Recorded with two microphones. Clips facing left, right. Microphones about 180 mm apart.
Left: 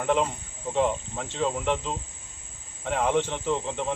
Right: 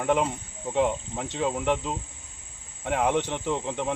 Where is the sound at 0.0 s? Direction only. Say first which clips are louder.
Even; 5° right (ahead or behind).